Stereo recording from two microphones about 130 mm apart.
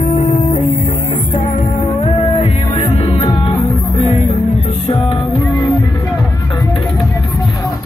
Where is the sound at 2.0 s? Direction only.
50° left (ahead or behind).